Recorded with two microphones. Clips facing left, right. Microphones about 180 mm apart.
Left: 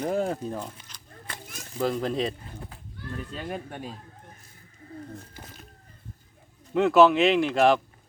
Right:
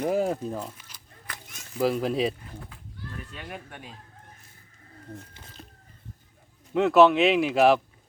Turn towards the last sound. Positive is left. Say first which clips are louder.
# right 1 dB
turn(degrees=-5)  # may be behind; listen again after turning